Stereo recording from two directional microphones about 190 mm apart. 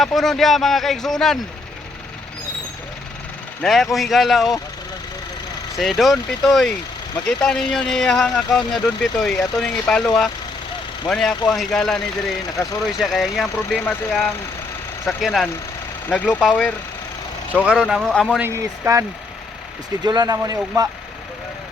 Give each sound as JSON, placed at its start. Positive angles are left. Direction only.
{"t": 0.0, "sound": "speech", "side_deg": 0}
{"t": 3.6, "sound": "speech", "side_deg": 0}
{"t": 5.7, "sound": "speech", "side_deg": 0}
{"t": 18.3, "sound": "speech", "side_deg": -15}